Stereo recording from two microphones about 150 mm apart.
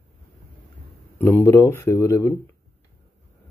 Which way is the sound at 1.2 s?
15° left (ahead or behind).